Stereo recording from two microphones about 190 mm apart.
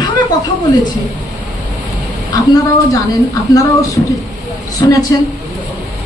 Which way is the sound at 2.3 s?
20° left (ahead or behind).